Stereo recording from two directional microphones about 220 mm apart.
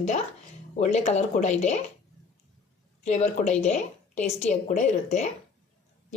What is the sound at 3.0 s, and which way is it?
A woman's voice, 30° left (ahead or behind).